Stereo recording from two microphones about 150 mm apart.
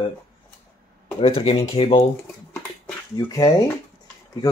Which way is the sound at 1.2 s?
35° left (ahead or behind).